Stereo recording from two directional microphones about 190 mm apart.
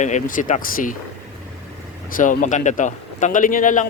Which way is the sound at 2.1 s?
45° left (ahead or behind).